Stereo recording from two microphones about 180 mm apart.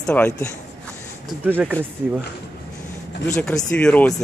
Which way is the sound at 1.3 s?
10° right (ahead or behind).